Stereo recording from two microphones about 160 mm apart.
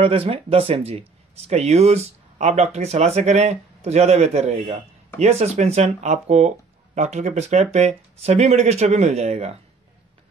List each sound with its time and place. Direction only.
0.0 s speech: 35° right (ahead or behind)